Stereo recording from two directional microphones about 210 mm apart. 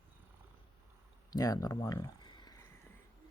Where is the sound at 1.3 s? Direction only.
15° left (ahead or behind).